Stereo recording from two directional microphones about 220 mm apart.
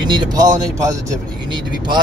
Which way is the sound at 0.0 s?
20° right (ahead or behind).